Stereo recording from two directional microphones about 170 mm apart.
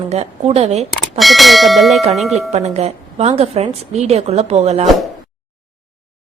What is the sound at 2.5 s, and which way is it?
A woman's voice, 40° right (ahead or behind).